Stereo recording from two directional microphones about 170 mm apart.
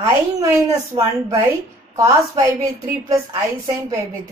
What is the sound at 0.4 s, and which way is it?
Speech, 20° right (ahead or behind).